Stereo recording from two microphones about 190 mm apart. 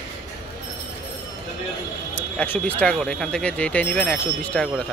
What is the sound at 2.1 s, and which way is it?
Speech, 10° left (ahead or behind).